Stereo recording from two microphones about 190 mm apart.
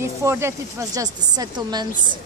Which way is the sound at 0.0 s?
15° right (ahead or behind).